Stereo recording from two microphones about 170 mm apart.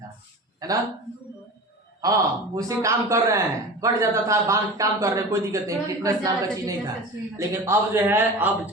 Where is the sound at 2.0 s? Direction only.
20° right (ahead or behind).